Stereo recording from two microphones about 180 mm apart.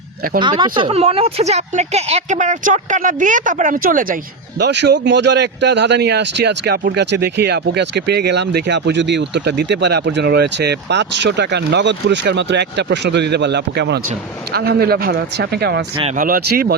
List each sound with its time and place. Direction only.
0.3 s speech: 25° right (ahead or behind); by 4.2 s 50° right (ahead or behind)
4.6 s speech: 70° right (ahead or behind)
16.1 s speech: 50° right (ahead or behind)